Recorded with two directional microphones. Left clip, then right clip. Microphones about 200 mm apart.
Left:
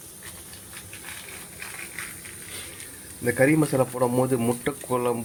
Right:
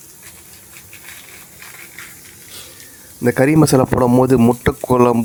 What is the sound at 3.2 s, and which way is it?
Speech, 40° right (ahead or behind).